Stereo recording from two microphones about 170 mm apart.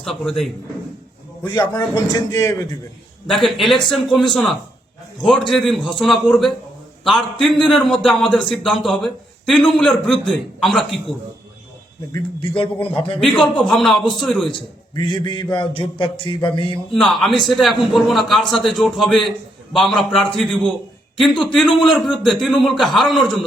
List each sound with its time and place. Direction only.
0.0 s a man's voice: centre (ahead or behind)
1.5 s speech: 25° left (ahead or behind)
3.2 s a man's voice: centre (ahead or behind)
12.1 s a man's voice: 30° left (ahead or behind)
13.1 s a man's voice: 5° left (ahead or behind)
14.5 s speech: 25° left (ahead or behind)
16.9 s a man's voice: centre (ahead or behind)